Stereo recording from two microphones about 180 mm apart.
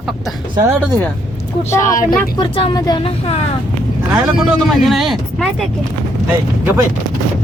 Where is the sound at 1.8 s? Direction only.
50° left (ahead or behind).